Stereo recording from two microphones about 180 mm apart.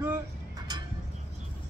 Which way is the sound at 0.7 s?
25° right (ahead or behind).